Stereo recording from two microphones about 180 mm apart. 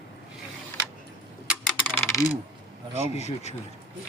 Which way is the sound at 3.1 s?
35° left (ahead or behind).